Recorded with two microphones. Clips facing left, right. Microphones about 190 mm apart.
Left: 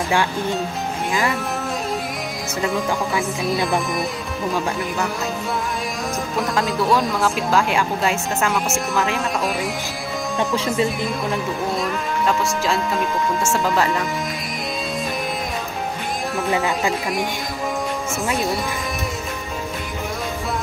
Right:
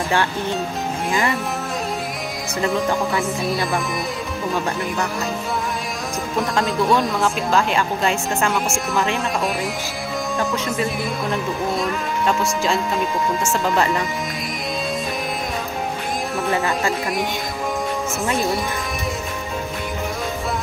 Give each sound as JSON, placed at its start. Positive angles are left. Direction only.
{"t": 2.6, "sound": "speech", "side_deg": 0}
{"t": 6.4, "sound": "speech", "side_deg": 0}
{"t": 10.5, "sound": "speech", "side_deg": 30}
{"t": 11.7, "sound": "speech", "side_deg": 0}
{"t": 16.4, "sound": "speech", "side_deg": 15}